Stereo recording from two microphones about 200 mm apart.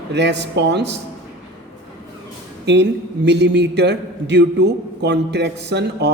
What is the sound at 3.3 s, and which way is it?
A man's voice, 60° right (ahead or behind).